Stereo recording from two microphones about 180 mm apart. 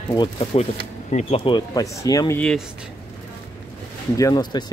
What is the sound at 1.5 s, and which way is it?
Speech, 20° left (ahead or behind).